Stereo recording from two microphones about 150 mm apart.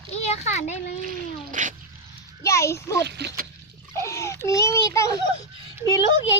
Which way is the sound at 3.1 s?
90° right.